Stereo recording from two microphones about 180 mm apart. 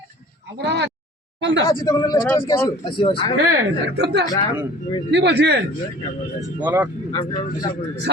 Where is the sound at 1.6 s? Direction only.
20° left (ahead or behind).